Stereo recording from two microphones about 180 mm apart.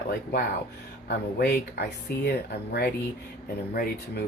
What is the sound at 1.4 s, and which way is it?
Speech, 65° left (ahead or behind).